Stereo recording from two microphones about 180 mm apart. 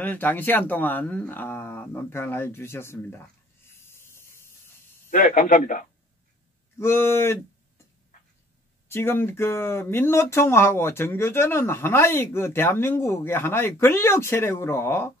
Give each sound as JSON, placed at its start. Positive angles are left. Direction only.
{"t": 0.0, "sound": "speech", "side_deg": 10}
{"t": 3.7, "sound": "a sound", "side_deg": 15}
{"t": 5.1, "sound": "a man's voice", "side_deg": 45}
{"t": 6.8, "sound": "speech", "side_deg": 15}
{"t": 8.8, "sound": "speech", "side_deg": 15}